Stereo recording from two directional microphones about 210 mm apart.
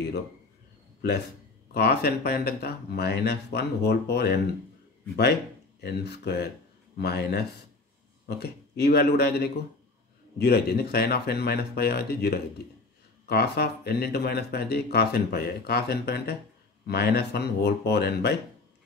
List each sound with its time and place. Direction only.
1.7 s speech: 50° left (ahead or behind)